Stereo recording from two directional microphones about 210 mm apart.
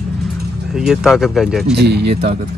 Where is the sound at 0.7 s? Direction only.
Centre (ahead or behind).